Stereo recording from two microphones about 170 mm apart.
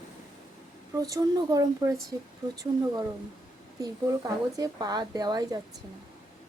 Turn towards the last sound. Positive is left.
turn(degrees=-25)  # may be behind; listen again after turning